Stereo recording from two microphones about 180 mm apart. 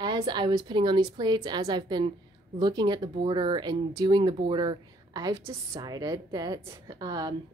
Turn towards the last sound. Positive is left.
turn(degrees=-20)  # may be behind; listen again after turning